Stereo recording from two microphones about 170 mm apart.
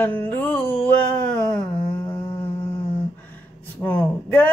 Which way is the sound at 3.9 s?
10° left (ahead or behind).